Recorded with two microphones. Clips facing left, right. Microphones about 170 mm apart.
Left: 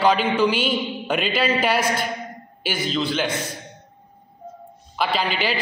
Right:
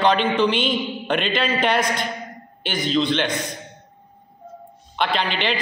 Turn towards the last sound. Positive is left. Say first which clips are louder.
# even
turn(degrees=5)  # may be behind; listen again after turning